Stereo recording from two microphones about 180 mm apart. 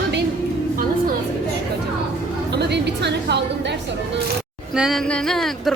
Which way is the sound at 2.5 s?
70° right (ahead or behind).